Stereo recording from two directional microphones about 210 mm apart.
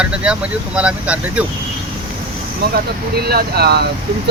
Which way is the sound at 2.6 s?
50° right (ahead or behind).